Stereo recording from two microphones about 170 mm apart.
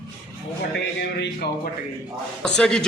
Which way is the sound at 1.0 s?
75° left (ahead or behind).